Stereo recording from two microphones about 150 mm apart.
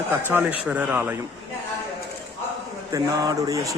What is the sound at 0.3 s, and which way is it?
Speech, 10° right (ahead or behind).